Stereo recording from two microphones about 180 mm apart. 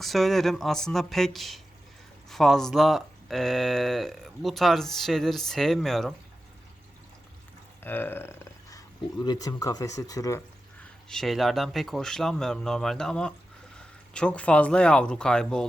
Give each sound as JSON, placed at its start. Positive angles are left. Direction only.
{"t": 0.0, "sound": "speech", "side_deg": 0}
{"t": 7.8, "sound": "burping", "side_deg": 10}
{"t": 9.2, "sound": "speech", "side_deg": 25}
{"t": 11.1, "sound": "speech", "side_deg": 0}